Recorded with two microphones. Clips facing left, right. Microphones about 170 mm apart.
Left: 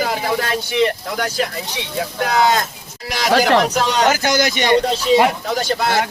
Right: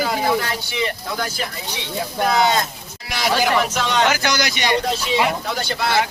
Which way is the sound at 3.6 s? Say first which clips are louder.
Left 3 dB; 40° left (ahead or behind).